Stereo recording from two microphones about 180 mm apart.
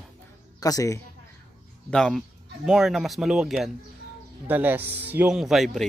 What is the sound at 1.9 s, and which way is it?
Speech, 5° left (ahead or behind).